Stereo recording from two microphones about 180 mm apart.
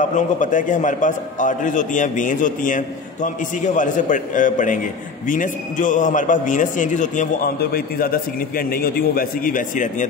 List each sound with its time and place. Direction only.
0.1 s a man's voice: 45° left (ahead or behind)